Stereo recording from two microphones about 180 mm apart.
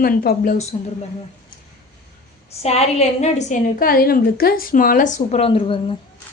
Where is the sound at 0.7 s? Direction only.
35° left (ahead or behind).